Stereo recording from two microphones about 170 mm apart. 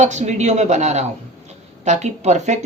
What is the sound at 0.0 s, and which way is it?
Speech, 45° right (ahead or behind).